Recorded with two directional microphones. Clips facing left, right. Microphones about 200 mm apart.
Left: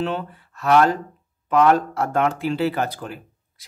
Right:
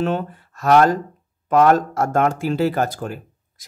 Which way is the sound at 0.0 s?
45° right (ahead or behind).